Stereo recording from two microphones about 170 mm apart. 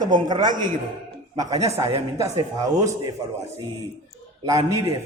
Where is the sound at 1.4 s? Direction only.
40° right (ahead or behind).